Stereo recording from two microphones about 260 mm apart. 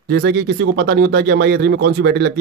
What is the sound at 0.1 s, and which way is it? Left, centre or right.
Speech, right.